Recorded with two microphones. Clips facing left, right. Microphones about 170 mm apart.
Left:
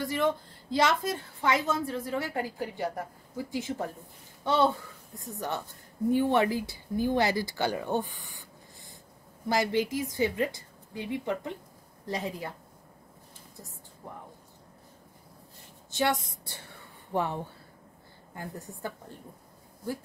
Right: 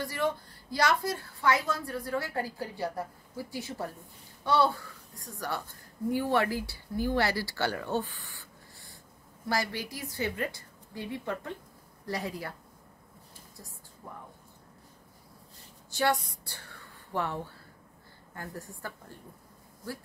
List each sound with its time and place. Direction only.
0.0 s a woman's voice: 20° left (ahead or behind)
15.9 s a woman's voice: 20° left (ahead or behind)
16.7 s a sound: 20° left (ahead or behind)
18.3 s a woman's voice: 20° left (ahead or behind)